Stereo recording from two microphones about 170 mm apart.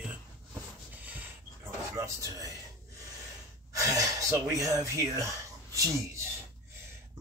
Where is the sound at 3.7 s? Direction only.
20° right (ahead or behind).